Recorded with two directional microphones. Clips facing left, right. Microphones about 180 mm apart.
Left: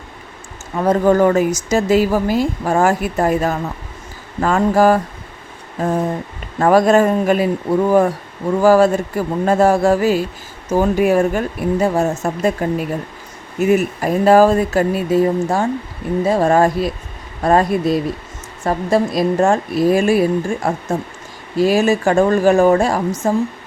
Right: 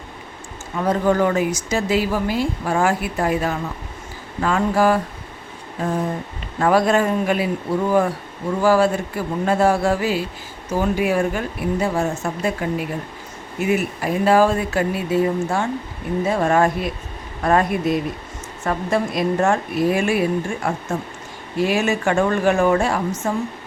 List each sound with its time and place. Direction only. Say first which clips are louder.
0.8 s a woman's voice: left 5 dB; 45° left (ahead or behind)